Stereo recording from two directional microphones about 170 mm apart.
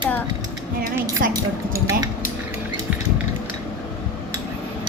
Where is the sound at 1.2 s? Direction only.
55° right (ahead or behind).